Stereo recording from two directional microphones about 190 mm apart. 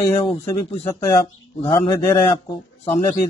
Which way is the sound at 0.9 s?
15° left (ahead or behind).